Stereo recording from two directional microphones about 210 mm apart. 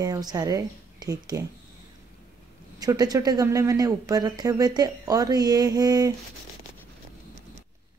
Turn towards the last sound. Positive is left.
turn(degrees=-20)  # may be behind; listen again after turning